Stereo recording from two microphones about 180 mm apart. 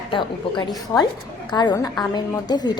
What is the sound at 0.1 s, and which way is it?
A woman's voice, 25° left (ahead or behind).